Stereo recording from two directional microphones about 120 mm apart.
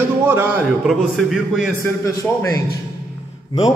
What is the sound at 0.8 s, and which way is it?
Speech, 5° right (ahead or behind).